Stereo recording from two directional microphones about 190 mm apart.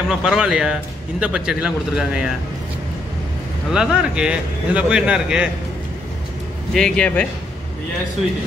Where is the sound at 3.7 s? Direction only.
5° right (ahead or behind).